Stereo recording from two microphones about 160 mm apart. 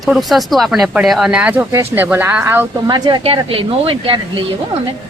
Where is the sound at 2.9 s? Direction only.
25° right (ahead or behind).